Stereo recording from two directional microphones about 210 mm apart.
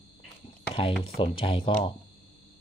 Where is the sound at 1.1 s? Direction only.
25° left (ahead or behind).